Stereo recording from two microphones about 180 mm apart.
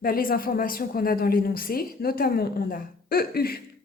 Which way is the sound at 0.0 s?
55° left (ahead or behind).